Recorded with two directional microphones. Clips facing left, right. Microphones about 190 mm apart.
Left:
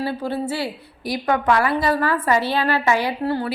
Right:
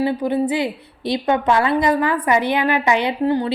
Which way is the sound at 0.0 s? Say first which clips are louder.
Right 5 dB; 15° right (ahead or behind).